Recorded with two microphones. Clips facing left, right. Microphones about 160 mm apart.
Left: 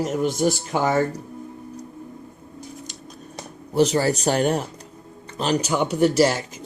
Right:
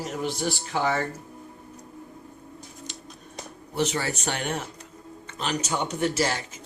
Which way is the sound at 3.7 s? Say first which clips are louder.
Left 8 dB; 35° left (ahead or behind).